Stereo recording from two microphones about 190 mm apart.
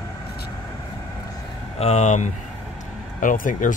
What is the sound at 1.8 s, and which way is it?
Speech, 35° left (ahead or behind).